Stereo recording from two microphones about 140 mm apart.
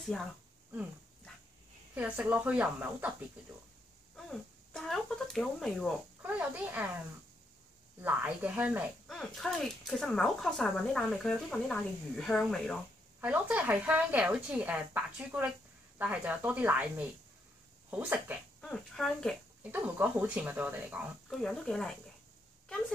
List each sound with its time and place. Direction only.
2.0 s speech: 10° right (ahead or behind)
4.3 s speech: centre (ahead or behind)
6.2 s speech: 10° right (ahead or behind)
8.0 s speech: 15° right (ahead or behind)
9.0 s speech: centre (ahead or behind)
13.2 s speech: 10° right (ahead or behind)
18.6 s speech: 5° left (ahead or behind)
19.6 s speech: 15° right (ahead or behind)
21.3 s speech: 5° left (ahead or behind)